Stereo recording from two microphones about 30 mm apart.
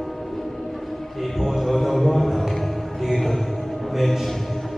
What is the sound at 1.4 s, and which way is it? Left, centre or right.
Mantra, centre.